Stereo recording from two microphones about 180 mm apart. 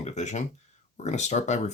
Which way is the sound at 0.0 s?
40° left (ahead or behind).